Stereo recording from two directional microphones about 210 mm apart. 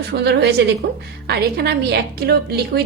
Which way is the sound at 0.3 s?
50° right (ahead or behind).